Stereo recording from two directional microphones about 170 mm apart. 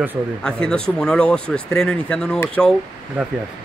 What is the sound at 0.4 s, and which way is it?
Speech, 5° left (ahead or behind).